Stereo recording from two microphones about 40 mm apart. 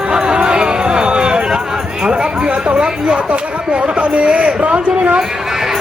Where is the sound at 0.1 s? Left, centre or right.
Right.